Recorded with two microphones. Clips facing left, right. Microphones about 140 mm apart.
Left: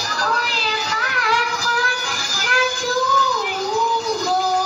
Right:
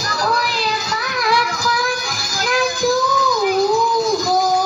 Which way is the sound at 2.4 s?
30° right (ahead or behind).